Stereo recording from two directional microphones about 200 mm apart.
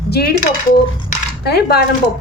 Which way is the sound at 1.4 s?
55° left (ahead or behind).